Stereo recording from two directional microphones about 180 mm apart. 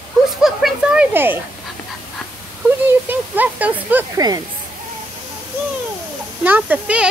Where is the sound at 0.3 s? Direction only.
Centre (ahead or behind).